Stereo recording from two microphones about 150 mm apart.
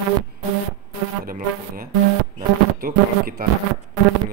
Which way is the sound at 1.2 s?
75° right (ahead or behind).